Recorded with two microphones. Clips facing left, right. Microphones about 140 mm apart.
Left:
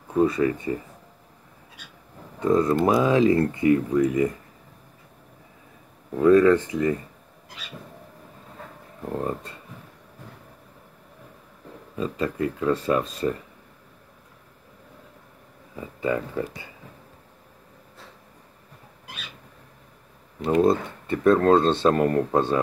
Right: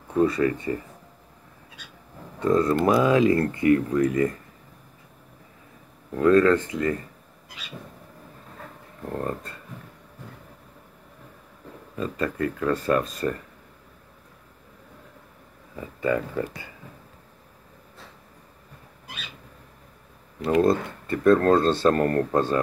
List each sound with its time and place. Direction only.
0.2 s speech: 20° left (ahead or behind)
2.4 s speech: 15° left (ahead or behind)
6.1 s speech: 15° left (ahead or behind)
9.1 s speech: 15° left (ahead or behind)
12.0 s speech: 10° left (ahead or behind)
15.7 s speech: 20° left (ahead or behind)
20.5 s speech: 25° left (ahead or behind)
21.2 s speech: 5° left (ahead or behind)